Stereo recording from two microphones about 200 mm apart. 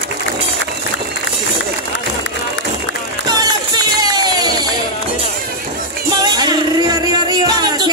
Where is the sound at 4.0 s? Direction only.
20° right (ahead or behind).